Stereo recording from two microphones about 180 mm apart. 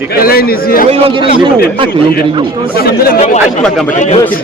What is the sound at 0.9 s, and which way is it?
A man's voice, 30° right (ahead or behind).